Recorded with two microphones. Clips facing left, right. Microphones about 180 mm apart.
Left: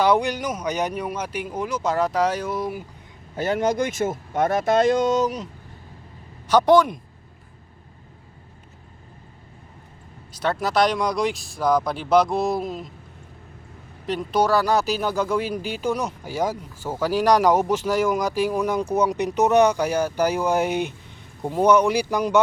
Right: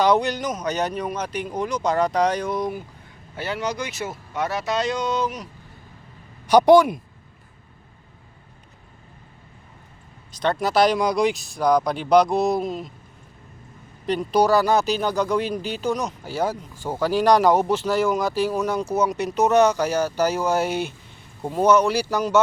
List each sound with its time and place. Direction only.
0.0 s speech: 10° left (ahead or behind)
3.3 s speech: 45° left (ahead or behind)
6.5 s speech: 10° right (ahead or behind)
10.3 s speech: 5° left (ahead or behind)
14.1 s speech: centre (ahead or behind)